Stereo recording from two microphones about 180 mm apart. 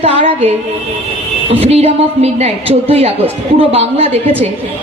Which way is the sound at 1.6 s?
35° right (ahead or behind).